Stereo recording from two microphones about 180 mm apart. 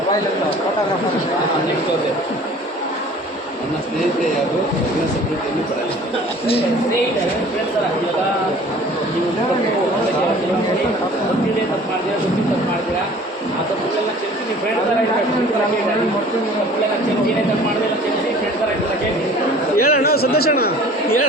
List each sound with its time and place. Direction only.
19.8 s a man's voice: 60° left (ahead or behind)